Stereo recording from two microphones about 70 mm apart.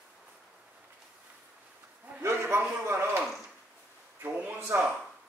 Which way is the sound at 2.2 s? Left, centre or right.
Right.